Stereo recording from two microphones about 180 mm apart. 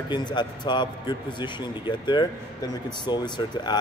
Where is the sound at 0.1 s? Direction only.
25° left (ahead or behind).